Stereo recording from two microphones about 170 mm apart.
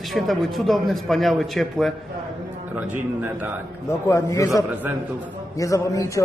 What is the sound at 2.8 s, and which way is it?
Speech, 10° right (ahead or behind).